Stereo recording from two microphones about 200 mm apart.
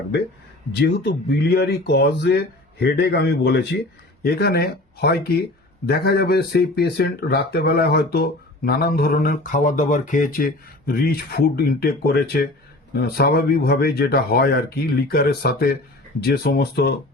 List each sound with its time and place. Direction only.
0.8 s speech: 55° left (ahead or behind)